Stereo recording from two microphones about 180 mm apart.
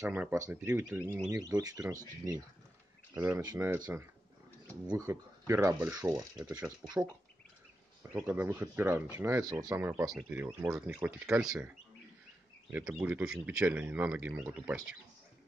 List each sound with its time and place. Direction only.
0.0 s speech: 15° right (ahead or behind)
3.2 s speech: 20° right (ahead or behind)
6.5 s speech: 5° right (ahead or behind)
8.0 s speech: 10° right (ahead or behind)
12.7 s speech: 5° right (ahead or behind)